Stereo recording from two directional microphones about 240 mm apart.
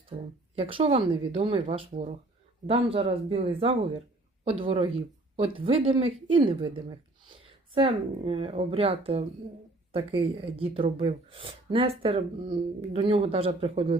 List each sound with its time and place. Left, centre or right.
0.1 s a woman's voice: right